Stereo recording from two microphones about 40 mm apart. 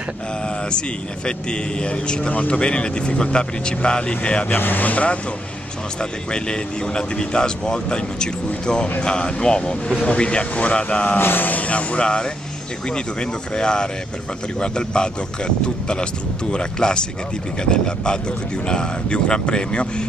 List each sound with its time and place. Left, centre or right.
0.7 s speech: left
4.5 s speech: left
6.3 s speech: left
11.1 s speech: left
11.6 s speech: left